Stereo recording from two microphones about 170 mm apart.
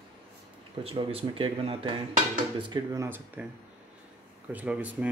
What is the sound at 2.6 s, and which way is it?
Speech, 20° right (ahead or behind).